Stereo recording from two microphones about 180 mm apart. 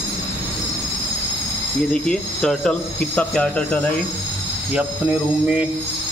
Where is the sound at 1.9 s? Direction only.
5° left (ahead or behind).